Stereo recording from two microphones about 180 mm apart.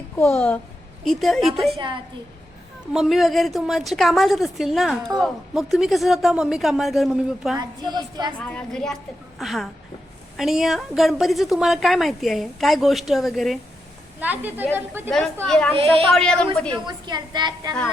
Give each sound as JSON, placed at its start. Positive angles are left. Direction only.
{"t": 0.2, "sound": "a woman's voice", "side_deg": 10}
{"t": 2.9, "sound": "a woman's voice", "side_deg": 0}
{"t": 7.8, "sound": "a woman's voice", "side_deg": -25}
{"t": 8.4, "sound": "a woman's voice", "side_deg": 5}
{"t": 15.4, "sound": "a woman's voice", "side_deg": 5}
{"t": 15.7, "sound": "speech", "side_deg": -30}
{"t": 16.1, "sound": "a woman's voice", "side_deg": 5}
{"t": 16.7, "sound": "a woman's voice", "side_deg": -25}